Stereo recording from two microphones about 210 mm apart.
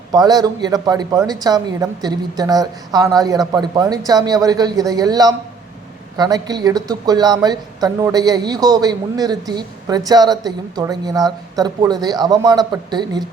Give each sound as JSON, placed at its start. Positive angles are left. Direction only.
{"t": 0.1, "sound": "a woman's voice", "side_deg": -20}